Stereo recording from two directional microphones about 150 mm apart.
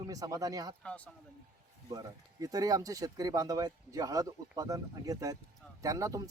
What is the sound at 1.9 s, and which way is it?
Speech, 25° right (ahead or behind).